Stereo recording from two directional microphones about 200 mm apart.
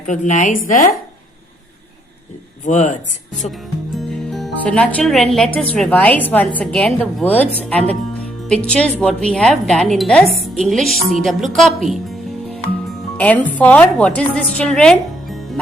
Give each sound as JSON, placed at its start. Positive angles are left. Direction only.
{"t": 0.1, "sound": "a woman's voice", "side_deg": 40}
{"t": 2.6, "sound": "a woman's voice", "side_deg": 35}
{"t": 3.5, "sound": "music", "side_deg": 0}
{"t": 5.7, "sound": "a woman's voice", "side_deg": 5}